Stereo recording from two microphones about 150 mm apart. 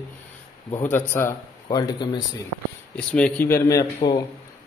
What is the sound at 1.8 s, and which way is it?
Speech, 30° left (ahead or behind).